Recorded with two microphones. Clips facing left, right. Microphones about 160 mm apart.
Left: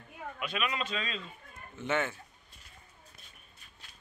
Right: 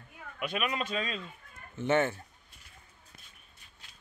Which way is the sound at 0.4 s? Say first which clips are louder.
Right 2 dB; 45° right (ahead or behind).